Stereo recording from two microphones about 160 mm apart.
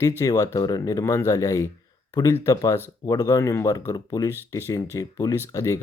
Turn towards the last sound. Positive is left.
turn(degrees=20)  # may be behind; listen again after turning